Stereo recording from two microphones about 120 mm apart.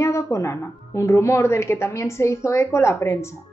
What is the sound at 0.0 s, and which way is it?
A woman's voice, 25° left (ahead or behind).